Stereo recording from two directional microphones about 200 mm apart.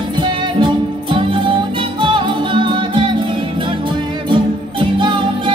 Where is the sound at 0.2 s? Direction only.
25° right (ahead or behind).